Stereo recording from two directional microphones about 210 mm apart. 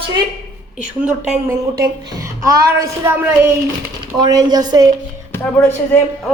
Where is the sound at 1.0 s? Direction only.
5° right (ahead or behind).